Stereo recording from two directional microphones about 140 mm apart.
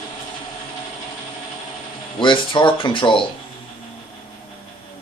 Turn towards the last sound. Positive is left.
turn(degrees=35)  # may be behind; listen again after turning